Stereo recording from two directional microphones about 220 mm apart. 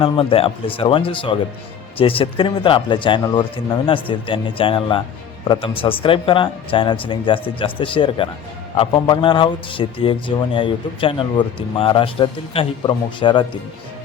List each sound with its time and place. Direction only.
0.0 s a man's voice: 25° left (ahead or behind)